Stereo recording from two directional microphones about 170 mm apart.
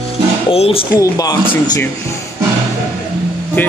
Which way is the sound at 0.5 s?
35° left (ahead or behind).